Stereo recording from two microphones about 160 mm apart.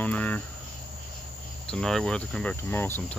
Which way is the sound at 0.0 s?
10° left (ahead or behind).